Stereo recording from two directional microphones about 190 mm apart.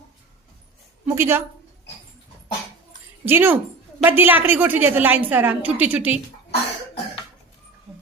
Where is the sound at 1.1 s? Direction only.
15° right (ahead or behind).